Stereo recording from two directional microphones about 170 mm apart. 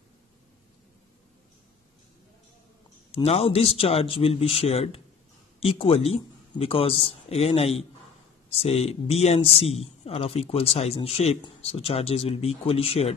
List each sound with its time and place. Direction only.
3.1 s speech: 35° left (ahead or behind)